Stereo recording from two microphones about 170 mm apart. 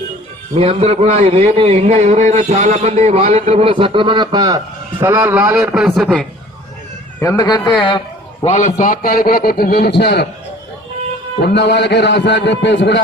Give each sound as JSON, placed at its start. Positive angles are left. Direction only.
{"t": 0.5, "sound": "a man's voice", "side_deg": -35}
{"t": 5.1, "sound": "a man's voice", "side_deg": -10}
{"t": 7.2, "sound": "a man's voice", "side_deg": 20}
{"t": 8.4, "sound": "a man's voice", "side_deg": 45}
{"t": 11.4, "sound": "a man's voice", "side_deg": 90}